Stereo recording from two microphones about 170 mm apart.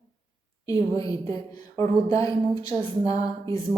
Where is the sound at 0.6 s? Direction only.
20° left (ahead or behind).